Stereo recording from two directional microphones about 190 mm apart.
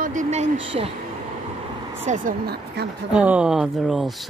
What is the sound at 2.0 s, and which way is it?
Speech, 40° right (ahead or behind).